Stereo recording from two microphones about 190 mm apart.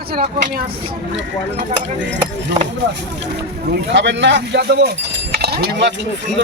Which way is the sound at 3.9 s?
70° right (ahead or behind).